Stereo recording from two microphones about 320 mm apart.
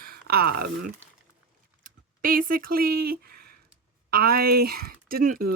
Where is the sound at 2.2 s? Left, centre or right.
Right.